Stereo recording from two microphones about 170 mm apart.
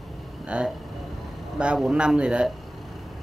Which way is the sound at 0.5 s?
5° right (ahead or behind).